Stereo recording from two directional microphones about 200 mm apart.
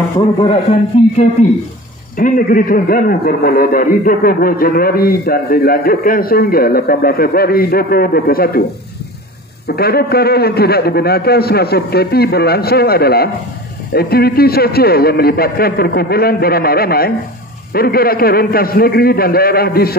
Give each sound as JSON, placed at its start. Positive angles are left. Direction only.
{"t": 2.1, "sound": "a man's voice", "side_deg": 45}
{"t": 9.7, "sound": "a man's voice", "side_deg": 50}